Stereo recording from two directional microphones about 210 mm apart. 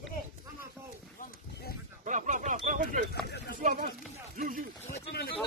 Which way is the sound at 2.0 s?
35° right (ahead or behind).